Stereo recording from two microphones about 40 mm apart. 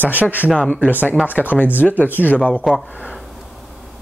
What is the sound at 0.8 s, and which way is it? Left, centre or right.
Speech, left.